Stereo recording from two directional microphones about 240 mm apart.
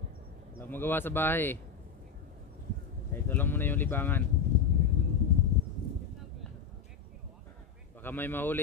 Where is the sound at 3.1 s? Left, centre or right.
Centre.